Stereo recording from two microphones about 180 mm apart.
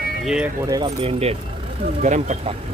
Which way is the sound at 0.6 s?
25° right (ahead or behind).